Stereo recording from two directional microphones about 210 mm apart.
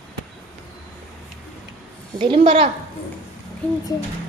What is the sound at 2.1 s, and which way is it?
Speech, 25° right (ahead or behind).